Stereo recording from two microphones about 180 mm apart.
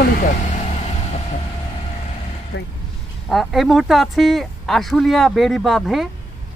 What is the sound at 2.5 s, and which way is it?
Speech, 80° left.